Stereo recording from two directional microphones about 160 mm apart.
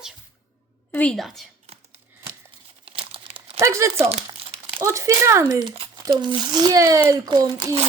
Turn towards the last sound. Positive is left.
turn(degrees=-25)  # may be behind; listen again after turning